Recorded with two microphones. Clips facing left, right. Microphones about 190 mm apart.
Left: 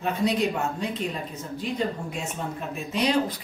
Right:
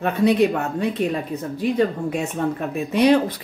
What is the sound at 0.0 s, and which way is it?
Speech, 60° right (ahead or behind).